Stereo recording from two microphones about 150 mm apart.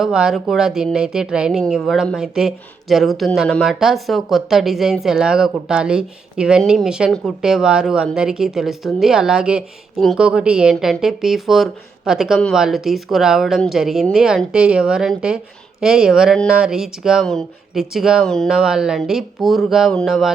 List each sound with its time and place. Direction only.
0.0 s speech: 5° right (ahead or behind)